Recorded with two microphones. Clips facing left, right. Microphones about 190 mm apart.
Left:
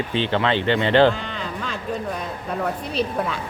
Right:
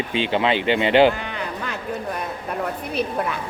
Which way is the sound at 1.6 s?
65° right (ahead or behind).